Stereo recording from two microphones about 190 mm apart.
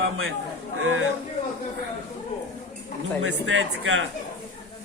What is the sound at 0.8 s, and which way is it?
Speech, 90° right.